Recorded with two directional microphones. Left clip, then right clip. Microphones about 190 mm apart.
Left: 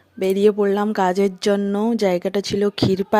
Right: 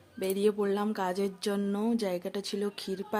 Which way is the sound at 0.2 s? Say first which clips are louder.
Left 12 dB; 40° left (ahead or behind).